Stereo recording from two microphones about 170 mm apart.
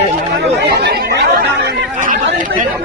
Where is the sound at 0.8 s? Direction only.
75° right (ahead or behind).